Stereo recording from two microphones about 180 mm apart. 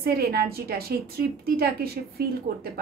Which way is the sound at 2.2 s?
60° right (ahead or behind).